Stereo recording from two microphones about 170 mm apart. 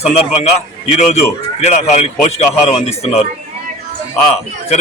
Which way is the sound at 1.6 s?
40° left (ahead or behind).